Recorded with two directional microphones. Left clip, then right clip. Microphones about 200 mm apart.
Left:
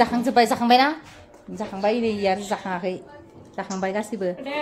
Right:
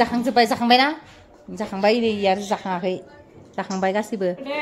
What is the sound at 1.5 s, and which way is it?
A woman's voice, 15° right (ahead or behind).